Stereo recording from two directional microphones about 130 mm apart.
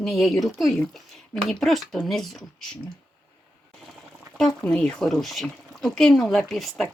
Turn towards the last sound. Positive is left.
turn(degrees=0)  # may be behind; listen again after turning